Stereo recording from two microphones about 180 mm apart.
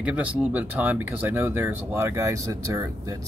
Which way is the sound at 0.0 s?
10° right (ahead or behind).